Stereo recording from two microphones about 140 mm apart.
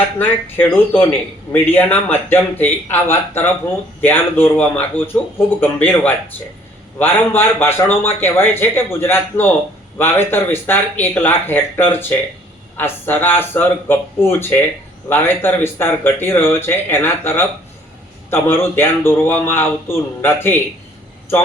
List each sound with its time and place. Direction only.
0.2 s a man's voice: 15° left (ahead or behind)